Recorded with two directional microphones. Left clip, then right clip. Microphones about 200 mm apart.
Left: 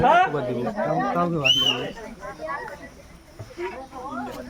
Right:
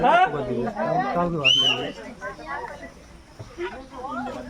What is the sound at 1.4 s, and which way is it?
Speech, 25° left (ahead or behind).